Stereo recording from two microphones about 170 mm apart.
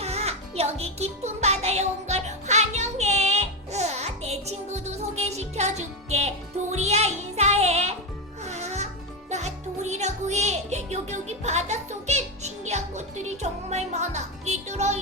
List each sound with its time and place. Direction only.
0.0 s music: 40° right (ahead or behind)